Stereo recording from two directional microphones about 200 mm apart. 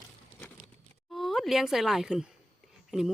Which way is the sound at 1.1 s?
Centre (ahead or behind).